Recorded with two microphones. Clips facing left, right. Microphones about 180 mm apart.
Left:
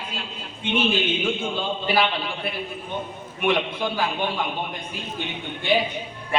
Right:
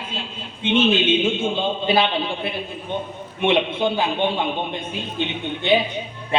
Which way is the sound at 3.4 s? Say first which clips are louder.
Right 4 dB; 25° right (ahead or behind).